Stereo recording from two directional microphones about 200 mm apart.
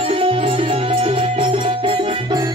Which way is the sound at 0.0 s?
30° right (ahead or behind).